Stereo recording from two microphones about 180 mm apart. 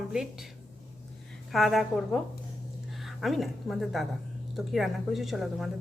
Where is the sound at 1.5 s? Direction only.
Centre (ahead or behind).